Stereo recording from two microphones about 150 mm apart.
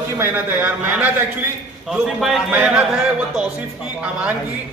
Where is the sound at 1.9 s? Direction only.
Centre (ahead or behind).